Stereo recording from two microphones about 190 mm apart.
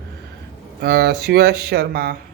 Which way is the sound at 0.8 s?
60° right (ahead or behind).